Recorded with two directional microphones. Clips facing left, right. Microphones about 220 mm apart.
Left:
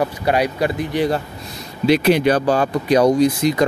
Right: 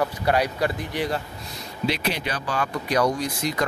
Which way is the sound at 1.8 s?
50° left (ahead or behind).